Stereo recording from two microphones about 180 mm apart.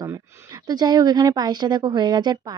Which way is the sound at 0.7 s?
20° right (ahead or behind).